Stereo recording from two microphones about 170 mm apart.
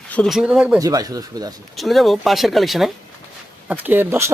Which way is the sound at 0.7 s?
20° right (ahead or behind).